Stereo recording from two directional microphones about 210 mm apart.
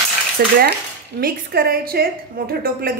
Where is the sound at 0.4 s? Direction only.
45° right (ahead or behind).